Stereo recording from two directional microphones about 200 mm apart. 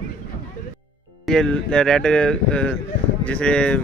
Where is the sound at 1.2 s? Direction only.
5° left (ahead or behind).